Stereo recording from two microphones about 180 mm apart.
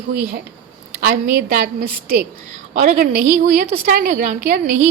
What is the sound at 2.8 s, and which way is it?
A woman's voice, 45° right (ahead or behind).